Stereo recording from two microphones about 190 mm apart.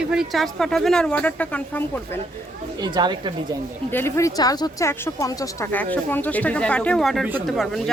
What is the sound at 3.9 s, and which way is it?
Speech, 15° left (ahead or behind).